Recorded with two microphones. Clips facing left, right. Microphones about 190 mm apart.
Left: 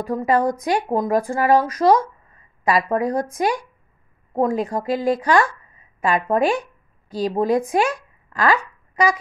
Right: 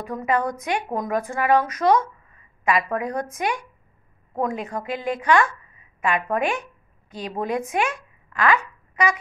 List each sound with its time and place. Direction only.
0.0 s a woman's voice: 35° left (ahead or behind)